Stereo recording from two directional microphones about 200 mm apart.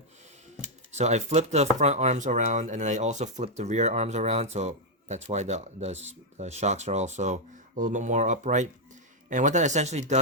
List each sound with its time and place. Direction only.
0.9 s speech: 35° right (ahead or behind)